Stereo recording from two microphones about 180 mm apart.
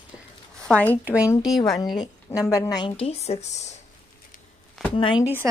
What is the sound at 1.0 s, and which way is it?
Speech, 5° right (ahead or behind).